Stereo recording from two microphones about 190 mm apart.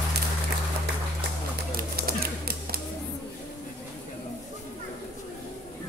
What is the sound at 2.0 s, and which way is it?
Typewriter, 50° right (ahead or behind).